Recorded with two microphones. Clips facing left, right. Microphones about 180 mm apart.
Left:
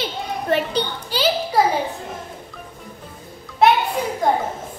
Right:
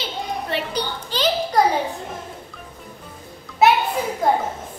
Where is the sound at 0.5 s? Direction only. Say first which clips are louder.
Left 7 dB; 45° left (ahead or behind).